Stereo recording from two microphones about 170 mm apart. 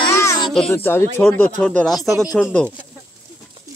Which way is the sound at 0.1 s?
15° left (ahead or behind).